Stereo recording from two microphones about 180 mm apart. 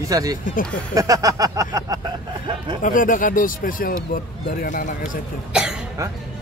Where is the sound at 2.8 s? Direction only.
50° left (ahead or behind).